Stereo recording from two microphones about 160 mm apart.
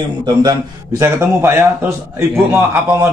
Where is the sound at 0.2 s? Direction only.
25° right (ahead or behind).